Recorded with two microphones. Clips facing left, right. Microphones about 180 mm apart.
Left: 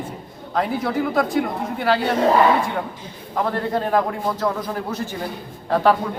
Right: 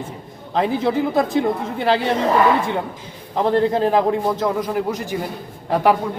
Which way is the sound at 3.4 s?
25° right (ahead or behind).